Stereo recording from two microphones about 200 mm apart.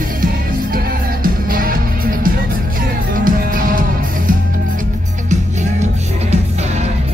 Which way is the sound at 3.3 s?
45° right (ahead or behind).